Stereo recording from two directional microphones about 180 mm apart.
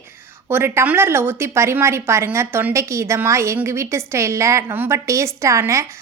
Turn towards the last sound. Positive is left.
turn(degrees=-15)  # may be behind; listen again after turning